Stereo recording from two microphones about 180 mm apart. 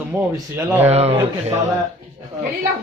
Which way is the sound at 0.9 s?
35° right (ahead or behind).